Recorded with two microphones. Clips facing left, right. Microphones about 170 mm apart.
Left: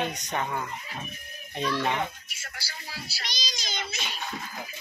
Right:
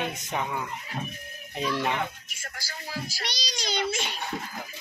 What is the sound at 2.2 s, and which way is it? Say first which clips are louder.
Speech: right 2 dB; 45° right (ahead or behind).